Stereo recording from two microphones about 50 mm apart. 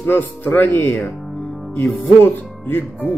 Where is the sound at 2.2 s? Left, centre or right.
Left.